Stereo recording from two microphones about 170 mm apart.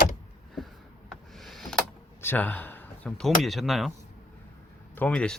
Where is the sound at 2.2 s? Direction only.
10° left (ahead or behind).